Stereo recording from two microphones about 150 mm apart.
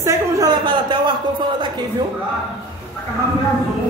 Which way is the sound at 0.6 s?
35° right (ahead or behind).